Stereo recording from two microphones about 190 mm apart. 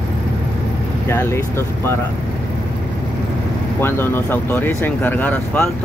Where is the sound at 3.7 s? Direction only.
10° left (ahead or behind).